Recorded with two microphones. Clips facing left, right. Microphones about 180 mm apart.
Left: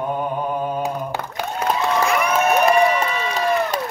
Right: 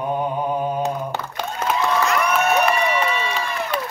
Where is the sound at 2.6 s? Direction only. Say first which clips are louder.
Left 4 dB; 40° left (ahead or behind).